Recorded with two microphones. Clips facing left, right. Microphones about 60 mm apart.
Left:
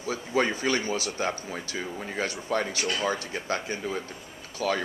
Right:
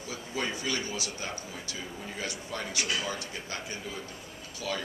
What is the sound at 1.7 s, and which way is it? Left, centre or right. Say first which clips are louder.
Speech: left 6 dB; left.